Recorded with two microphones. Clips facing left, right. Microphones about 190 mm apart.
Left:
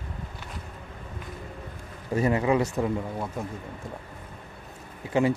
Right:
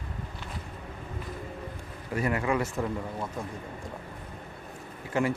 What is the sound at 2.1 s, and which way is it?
Speech, 25° left (ahead or behind).